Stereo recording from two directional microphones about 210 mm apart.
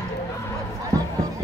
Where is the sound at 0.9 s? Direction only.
15° right (ahead or behind).